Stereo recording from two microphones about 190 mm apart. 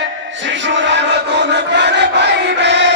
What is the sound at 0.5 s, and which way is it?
Crowd, 70° right (ahead or behind).